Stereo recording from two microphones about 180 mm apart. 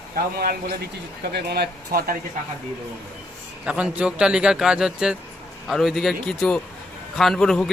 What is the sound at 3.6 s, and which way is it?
A man's voice, 5° right (ahead or behind).